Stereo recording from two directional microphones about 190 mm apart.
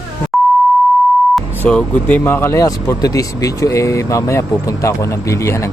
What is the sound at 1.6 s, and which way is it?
Speech, 5° left (ahead or behind).